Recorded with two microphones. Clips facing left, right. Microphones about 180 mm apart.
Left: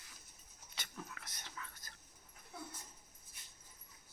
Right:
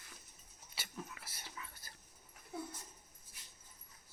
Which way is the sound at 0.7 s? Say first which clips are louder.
Right 2 dB; 5° right (ahead or behind).